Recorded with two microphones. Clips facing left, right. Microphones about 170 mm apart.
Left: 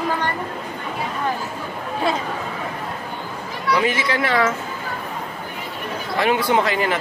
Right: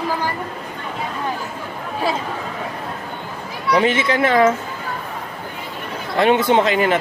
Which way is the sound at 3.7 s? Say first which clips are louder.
Right 4 dB; 25° right (ahead or behind).